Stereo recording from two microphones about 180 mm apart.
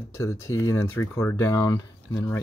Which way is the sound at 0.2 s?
15° left (ahead or behind).